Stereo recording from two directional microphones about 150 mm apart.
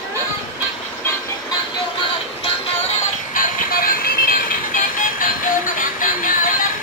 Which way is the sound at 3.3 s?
70° left (ahead or behind).